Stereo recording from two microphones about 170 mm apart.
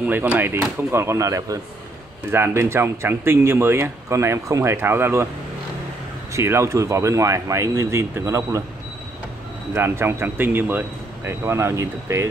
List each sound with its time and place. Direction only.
0.0 s speech: 10° right (ahead or behind)
6.3 s speech: 15° right (ahead or behind)
9.8 s speech: 15° right (ahead or behind)